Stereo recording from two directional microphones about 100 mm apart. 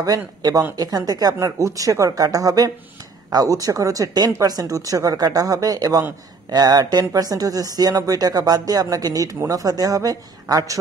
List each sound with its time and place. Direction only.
0.0 s speech: 40° right (ahead or behind)